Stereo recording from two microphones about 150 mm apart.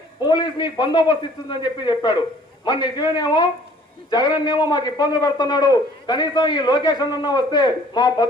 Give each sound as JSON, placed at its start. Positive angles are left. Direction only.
{"t": 0.2, "sound": "a man's voice", "side_deg": 30}